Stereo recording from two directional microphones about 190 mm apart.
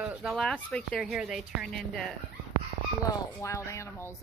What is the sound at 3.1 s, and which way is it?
Speech, 20° left (ahead or behind).